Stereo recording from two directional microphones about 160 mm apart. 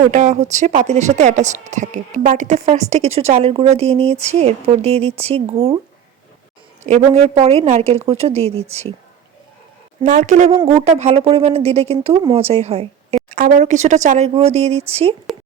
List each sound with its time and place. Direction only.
0.1 s speech: 45° right (ahead or behind)
6.8 s speech: 45° right (ahead or behind)
10.0 s speech: 55° right (ahead or behind)
10.7 s speech: 40° right (ahead or behind)
13.3 s speech: 55° right (ahead or behind)